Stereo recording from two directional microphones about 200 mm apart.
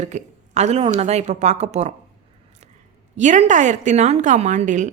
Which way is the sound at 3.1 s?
35° right (ahead or behind).